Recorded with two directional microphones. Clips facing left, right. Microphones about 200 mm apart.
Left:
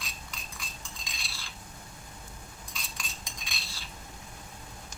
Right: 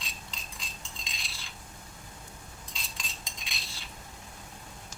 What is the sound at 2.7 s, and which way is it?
Cutlery, 20° right (ahead or behind).